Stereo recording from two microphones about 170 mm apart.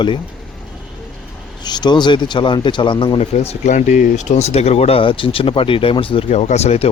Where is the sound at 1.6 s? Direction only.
25° left (ahead or behind).